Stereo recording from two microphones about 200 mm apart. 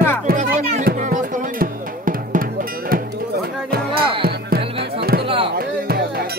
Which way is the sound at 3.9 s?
25° right (ahead or behind).